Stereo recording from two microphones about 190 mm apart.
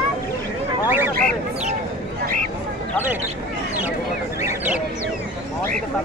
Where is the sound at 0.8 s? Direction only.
10° right (ahead or behind).